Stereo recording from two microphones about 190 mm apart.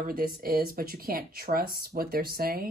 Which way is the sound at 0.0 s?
50° right (ahead or behind).